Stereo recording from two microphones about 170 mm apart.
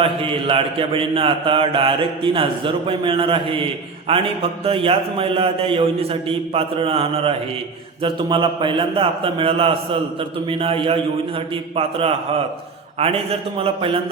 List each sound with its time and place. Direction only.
0.0 s a man's voice: 30° right (ahead or behind)
13.6 s a man's voice: 35° right (ahead or behind)